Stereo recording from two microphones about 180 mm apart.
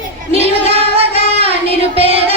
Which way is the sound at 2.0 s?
35° right (ahead or behind).